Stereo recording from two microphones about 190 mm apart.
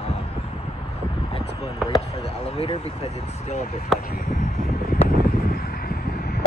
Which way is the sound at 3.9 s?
Centre (ahead or behind).